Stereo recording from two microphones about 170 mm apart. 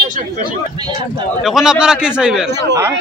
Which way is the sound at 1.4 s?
5° right (ahead or behind).